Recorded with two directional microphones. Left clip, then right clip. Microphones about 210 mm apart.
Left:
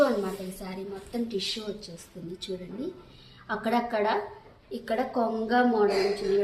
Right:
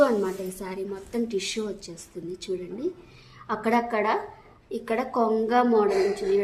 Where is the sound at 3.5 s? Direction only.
45° right (ahead or behind).